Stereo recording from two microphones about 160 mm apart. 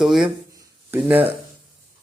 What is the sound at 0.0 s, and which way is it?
Speech, centre (ahead or behind).